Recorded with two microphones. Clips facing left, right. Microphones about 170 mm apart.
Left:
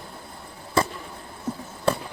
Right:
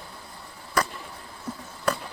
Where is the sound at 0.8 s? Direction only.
25° left (ahead or behind).